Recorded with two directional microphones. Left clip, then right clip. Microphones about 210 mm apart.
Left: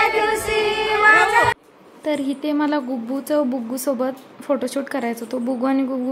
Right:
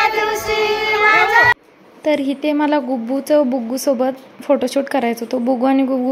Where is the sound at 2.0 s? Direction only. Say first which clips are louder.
Right 6 dB; 10° right (ahead or behind).